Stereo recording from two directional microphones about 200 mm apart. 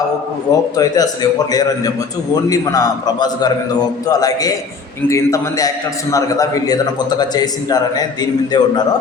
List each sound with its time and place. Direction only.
0.8 s a man's voice: 20° left (ahead or behind)